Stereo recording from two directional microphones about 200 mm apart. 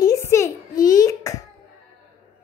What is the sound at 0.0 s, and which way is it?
Hands, 15° left (ahead or behind).